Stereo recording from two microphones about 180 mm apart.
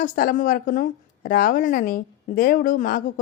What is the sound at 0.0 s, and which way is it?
A woman's voice, 50° left (ahead or behind).